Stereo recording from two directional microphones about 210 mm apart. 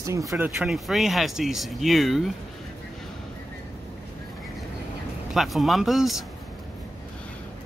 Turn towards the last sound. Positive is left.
turn(degrees=0)  # may be behind; listen again after turning